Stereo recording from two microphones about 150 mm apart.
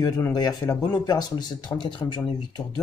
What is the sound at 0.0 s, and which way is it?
Speech, 25° left (ahead or behind).